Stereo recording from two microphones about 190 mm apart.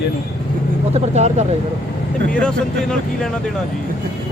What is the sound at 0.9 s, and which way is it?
Speech, 35° right (ahead or behind).